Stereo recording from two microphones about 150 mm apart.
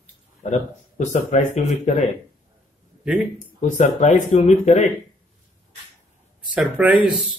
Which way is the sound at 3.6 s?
55° left (ahead or behind).